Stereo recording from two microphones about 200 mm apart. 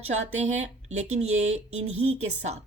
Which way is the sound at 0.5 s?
35° right (ahead or behind).